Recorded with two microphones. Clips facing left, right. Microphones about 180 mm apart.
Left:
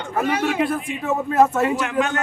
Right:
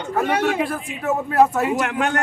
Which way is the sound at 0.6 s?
Centre (ahead or behind).